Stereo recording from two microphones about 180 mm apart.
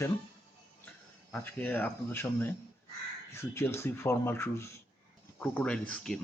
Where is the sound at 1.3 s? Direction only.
10° left (ahead or behind).